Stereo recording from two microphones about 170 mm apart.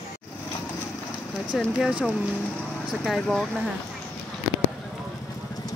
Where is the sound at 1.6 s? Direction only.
5° right (ahead or behind).